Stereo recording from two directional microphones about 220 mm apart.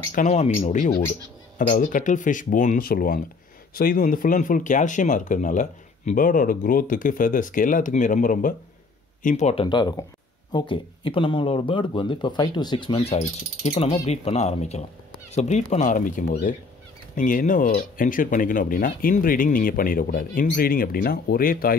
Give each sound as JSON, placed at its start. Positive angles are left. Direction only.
{"t": 0.1, "sound": "speech", "side_deg": 35}